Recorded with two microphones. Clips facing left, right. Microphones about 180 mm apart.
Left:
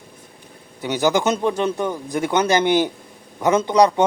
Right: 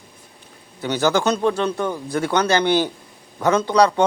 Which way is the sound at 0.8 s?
15° left (ahead or behind).